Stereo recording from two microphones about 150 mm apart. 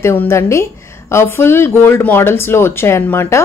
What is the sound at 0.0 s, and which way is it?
A woman's voice, 15° left (ahead or behind).